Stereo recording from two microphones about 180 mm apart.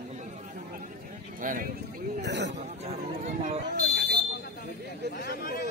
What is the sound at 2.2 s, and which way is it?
Speech, 75° right (ahead or behind).